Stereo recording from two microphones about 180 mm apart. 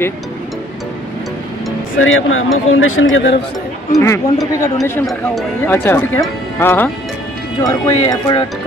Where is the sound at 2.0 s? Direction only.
90° left.